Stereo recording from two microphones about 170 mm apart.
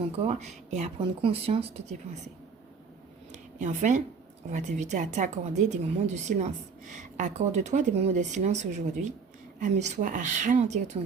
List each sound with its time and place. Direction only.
0.2 s speech: 40° right (ahead or behind)
3.6 s a woman's voice: 45° right (ahead or behind)